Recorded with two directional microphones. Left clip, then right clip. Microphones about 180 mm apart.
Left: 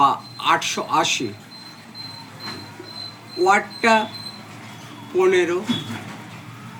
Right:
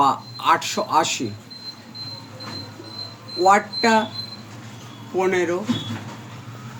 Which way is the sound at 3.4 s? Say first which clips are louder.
Right 1 dB; 45° right (ahead or behind).